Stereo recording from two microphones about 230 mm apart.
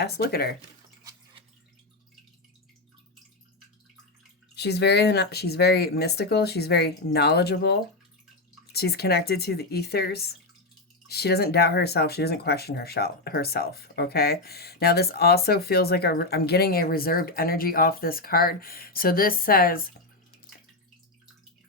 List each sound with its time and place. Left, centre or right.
0.0 s speech: left
4.5 s speech: left